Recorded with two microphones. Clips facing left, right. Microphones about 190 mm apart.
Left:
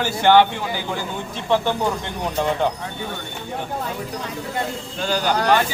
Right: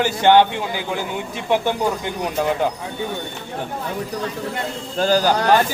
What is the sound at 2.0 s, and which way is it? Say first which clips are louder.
Speech: right 1 dB; 5° right (ahead or behind).